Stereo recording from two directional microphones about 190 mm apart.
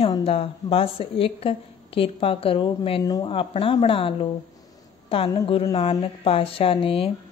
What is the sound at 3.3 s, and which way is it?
A woman's voice, 30° left (ahead or behind).